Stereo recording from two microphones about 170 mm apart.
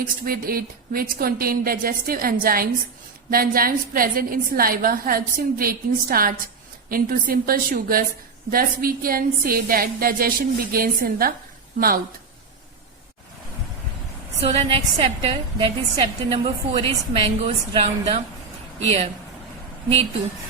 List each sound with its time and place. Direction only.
0.0 s a woman's voice: 60° right (ahead or behind)
14.4 s a woman's voice: 40° right (ahead or behind)